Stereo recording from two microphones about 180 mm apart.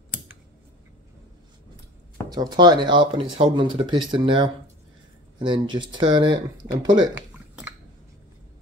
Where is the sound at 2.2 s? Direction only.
25° right (ahead or behind).